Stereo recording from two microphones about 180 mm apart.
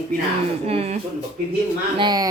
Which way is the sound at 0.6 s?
35° right (ahead or behind).